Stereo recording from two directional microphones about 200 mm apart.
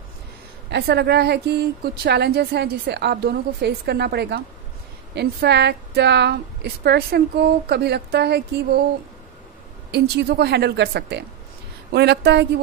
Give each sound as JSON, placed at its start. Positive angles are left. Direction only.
{"t": 0.7, "sound": "a woman's voice", "side_deg": -55}
{"t": 9.8, "sound": "a woman's voice", "side_deg": -55}